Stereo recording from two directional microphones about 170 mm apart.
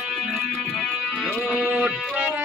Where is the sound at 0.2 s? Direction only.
Centre (ahead or behind).